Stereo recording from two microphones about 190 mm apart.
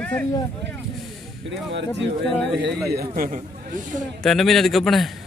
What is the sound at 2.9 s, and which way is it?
Speech, 45° right (ahead or behind).